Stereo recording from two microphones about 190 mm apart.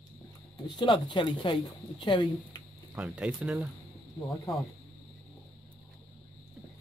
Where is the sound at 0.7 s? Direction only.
25° left (ahead or behind).